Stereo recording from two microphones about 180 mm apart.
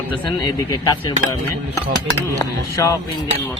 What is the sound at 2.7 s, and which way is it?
Speech, 15° left (ahead or behind).